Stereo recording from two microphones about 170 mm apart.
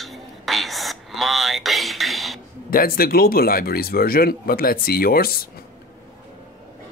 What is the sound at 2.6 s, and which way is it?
Speech, 60° left (ahead or behind).